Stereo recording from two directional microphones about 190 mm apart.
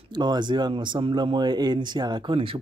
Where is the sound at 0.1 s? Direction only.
20° right (ahead or behind).